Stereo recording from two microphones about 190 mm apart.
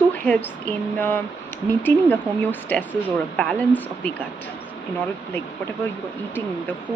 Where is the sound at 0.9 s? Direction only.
10° left (ahead or behind).